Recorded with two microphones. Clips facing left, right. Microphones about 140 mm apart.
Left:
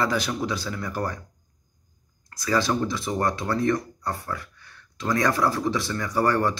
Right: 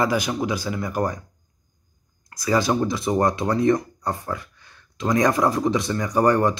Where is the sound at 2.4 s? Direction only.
15° right (ahead or behind).